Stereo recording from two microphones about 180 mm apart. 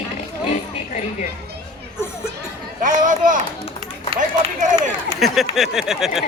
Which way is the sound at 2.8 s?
45° right (ahead or behind).